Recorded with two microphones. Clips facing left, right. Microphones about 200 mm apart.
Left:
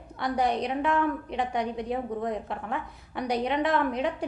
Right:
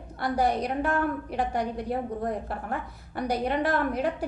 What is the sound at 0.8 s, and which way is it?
Speech, 40° right (ahead or behind).